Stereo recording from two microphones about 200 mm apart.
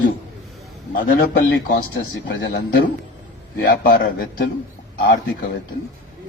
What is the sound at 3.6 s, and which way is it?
Speech, 50° left (ahead or behind).